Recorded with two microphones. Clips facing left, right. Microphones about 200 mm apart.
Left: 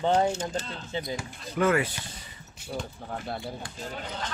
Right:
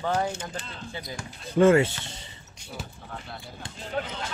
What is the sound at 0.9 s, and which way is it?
Speech, 20° left (ahead or behind).